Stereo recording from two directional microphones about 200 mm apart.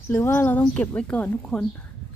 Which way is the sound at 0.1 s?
10° left (ahead or behind).